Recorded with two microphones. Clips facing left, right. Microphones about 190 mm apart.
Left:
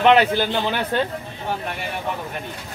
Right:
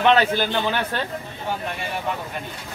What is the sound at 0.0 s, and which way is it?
A man's voice, 15° left (ahead or behind).